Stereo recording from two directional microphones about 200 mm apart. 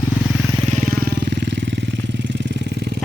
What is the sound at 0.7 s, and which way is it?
Vehicle, 45° right (ahead or behind).